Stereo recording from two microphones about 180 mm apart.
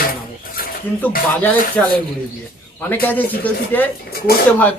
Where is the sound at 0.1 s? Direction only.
55° left (ahead or behind).